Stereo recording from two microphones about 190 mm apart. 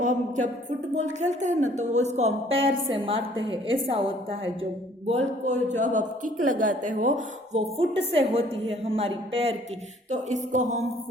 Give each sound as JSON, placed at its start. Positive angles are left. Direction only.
{"t": 0.0, "sound": "a woman's voice", "side_deg": -40}